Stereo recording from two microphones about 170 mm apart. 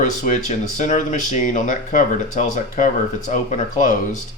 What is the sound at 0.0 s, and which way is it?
Speech, 45° left (ahead or behind).